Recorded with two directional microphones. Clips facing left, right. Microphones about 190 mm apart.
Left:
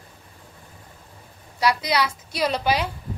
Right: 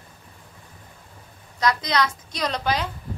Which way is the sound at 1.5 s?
10° left (ahead or behind).